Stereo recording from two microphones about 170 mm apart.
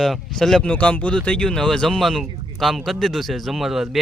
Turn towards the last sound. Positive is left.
turn(degrees=0)  # may be behind; listen again after turning